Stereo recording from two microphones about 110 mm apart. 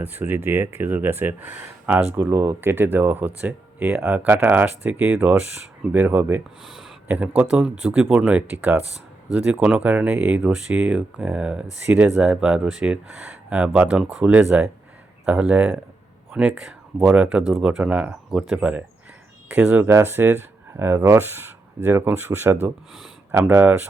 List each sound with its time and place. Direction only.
0.0 s speech: 15° right (ahead or behind)
6.7 s a sound: centre (ahead or behind)
7.1 s speech: 15° right (ahead or behind)
14.5 s speech: 15° right (ahead or behind)